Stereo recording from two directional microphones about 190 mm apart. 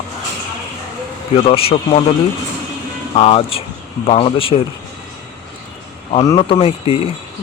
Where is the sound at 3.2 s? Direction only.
30° left (ahead or behind).